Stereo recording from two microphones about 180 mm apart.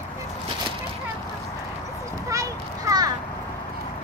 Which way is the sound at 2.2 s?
20° right (ahead or behind).